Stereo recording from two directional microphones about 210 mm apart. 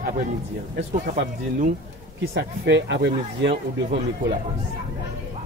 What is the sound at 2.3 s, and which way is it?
Speech, 55° right (ahead or behind).